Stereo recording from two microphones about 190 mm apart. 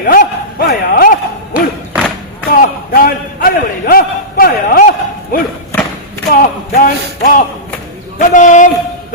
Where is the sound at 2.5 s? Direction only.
55° left (ahead or behind).